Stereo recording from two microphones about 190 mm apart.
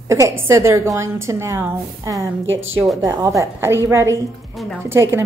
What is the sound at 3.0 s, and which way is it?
A woman's voice, 15° right (ahead or behind).